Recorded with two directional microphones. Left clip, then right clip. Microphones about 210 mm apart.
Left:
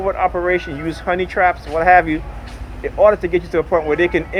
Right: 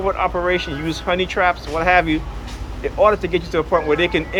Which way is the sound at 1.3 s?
30° left (ahead or behind).